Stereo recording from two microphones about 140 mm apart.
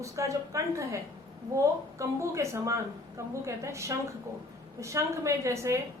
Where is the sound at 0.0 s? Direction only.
20° right (ahead or behind).